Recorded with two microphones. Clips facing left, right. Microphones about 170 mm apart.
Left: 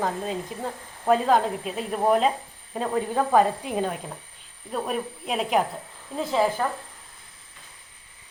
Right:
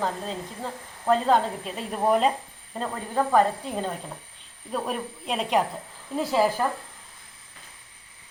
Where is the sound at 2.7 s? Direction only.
15° left (ahead or behind); by 6.7 s 5° right (ahead or behind).